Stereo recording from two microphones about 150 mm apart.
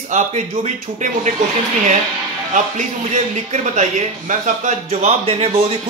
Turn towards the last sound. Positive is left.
turn(degrees=-40)  # may be behind; listen again after turning